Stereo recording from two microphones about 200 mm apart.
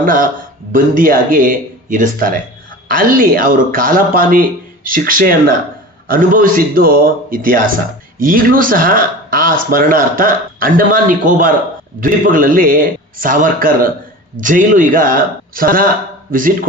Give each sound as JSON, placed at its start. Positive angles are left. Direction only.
{"t": 0.0, "sound": "speech", "side_deg": -45}